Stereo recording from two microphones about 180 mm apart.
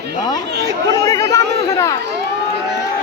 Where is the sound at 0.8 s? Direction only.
20° left (ahead or behind).